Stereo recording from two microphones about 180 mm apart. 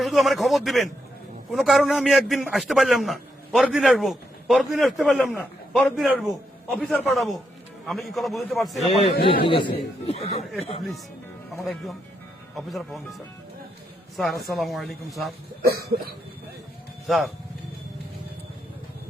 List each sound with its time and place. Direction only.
0.0 s a man's voice: centre (ahead or behind)
9.2 s a man's voice: 30° left (ahead or behind)
11.6 s a man's voice: centre (ahead or behind)
15.6 s a sound: 60° right (ahead or behind)
17.1 s a man's voice: centre (ahead or behind)